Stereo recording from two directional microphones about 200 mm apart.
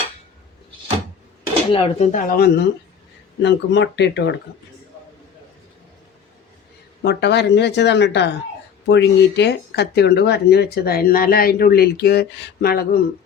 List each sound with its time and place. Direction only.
1.7 s speech: 25° left (ahead or behind)
2.1 s speech: 45° left (ahead or behind)
3.4 s speech: 60° left (ahead or behind)
7.0 s speech: 55° left (ahead or behind)